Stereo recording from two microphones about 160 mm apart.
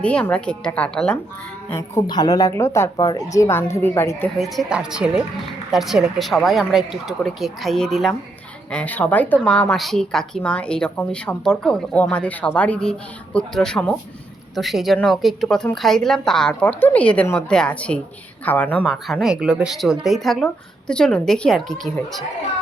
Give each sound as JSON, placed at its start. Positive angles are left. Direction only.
{"t": 0.0, "sound": "speech", "side_deg": 5}
{"t": 2.0, "sound": "a woman's voice", "side_deg": 25}
{"t": 4.4, "sound": "a woman's voice", "side_deg": 0}
{"t": 18.9, "sound": "a woman's voice", "side_deg": 0}